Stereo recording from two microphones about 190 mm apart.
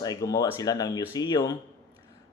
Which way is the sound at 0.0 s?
20° left (ahead or behind).